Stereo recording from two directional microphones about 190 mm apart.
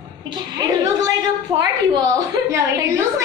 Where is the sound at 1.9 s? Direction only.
20° right (ahead or behind).